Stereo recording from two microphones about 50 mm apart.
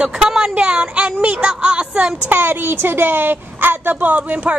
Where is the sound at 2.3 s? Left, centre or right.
Right.